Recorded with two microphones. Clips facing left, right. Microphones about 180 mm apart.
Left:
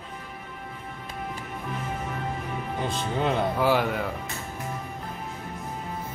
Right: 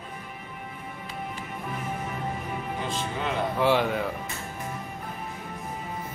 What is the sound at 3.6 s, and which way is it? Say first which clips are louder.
Speech: even; 5° left (ahead or behind).